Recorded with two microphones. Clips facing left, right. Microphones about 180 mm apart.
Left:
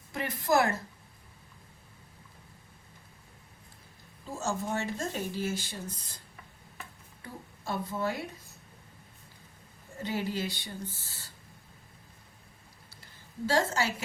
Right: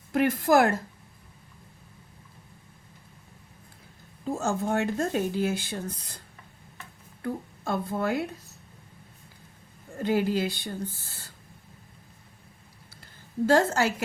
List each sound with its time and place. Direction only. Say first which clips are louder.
0.1 s a woman's voice: right 7 dB; 55° right (ahead or behind)
4.3 s speech: right 6 dB; 60° right (ahead or behind)
7.2 s speech: right 13 dB; 55° right (ahead or behind)
10.0 s speech: right 8 dB; 55° right (ahead or behind)
13.5 s speech: right 6 dB; 55° right (ahead or behind)